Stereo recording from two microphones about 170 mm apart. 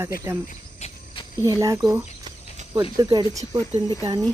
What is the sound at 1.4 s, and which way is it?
Speech, 20° right (ahead or behind).